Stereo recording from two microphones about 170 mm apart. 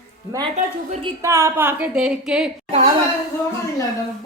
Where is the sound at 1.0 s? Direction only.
20° right (ahead or behind).